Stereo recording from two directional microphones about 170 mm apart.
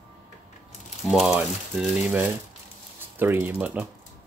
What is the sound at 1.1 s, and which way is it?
Speech, centre (ahead or behind).